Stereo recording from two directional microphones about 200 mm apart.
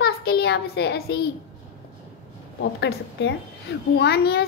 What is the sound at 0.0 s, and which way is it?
A child's voice, 50° left (ahead or behind).